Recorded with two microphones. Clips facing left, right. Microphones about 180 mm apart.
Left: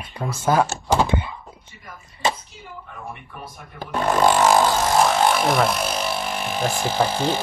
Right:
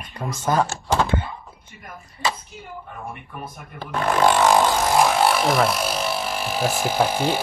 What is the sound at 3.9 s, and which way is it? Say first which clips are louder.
Speech: even; 5° left (ahead or behind).